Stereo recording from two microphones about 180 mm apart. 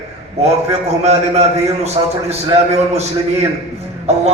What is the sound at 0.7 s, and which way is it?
A man's voice, 35° right (ahead or behind).